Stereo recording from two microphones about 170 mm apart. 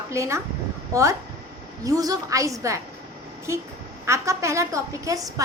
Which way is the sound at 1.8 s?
20° right (ahead or behind).